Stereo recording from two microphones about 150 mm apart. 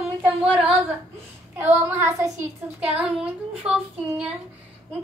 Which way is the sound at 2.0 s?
15° right (ahead or behind).